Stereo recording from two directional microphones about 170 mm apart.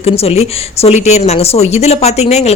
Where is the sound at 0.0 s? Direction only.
35° left (ahead or behind).